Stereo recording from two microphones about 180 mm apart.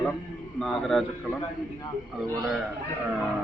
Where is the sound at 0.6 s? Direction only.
Centre (ahead or behind).